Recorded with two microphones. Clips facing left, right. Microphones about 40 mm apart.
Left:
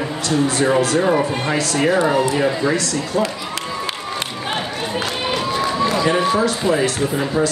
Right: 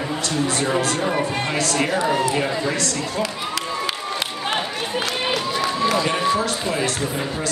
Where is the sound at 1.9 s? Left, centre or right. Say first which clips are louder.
Left 5 dB; centre.